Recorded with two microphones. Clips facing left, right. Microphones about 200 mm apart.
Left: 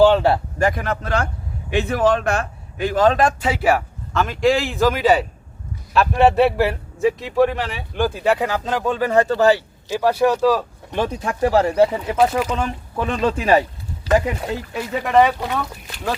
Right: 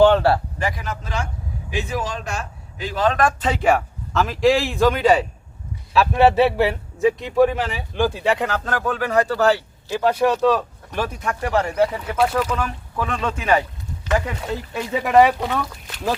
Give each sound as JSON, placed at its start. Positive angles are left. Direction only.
{"t": 0.0, "sound": "speech", "side_deg": 15}
{"t": 0.6, "sound": "a man's voice", "side_deg": 55}
{"t": 3.4, "sound": "a man's voice", "side_deg": 5}
{"t": 9.2, "sound": "speech", "side_deg": 20}
{"t": 10.2, "sound": "speech", "side_deg": 10}
{"t": 10.9, "sound": "speech", "side_deg": 25}
{"t": 14.7, "sound": "a man's voice", "side_deg": 0}
{"t": 15.1, "sound": "speech", "side_deg": -10}